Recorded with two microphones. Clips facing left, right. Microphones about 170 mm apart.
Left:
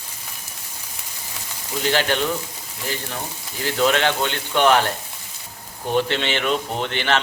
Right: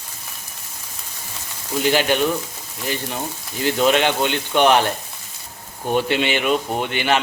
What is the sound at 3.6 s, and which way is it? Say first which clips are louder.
A man's voice: right 2 dB; 20° right (ahead or behind).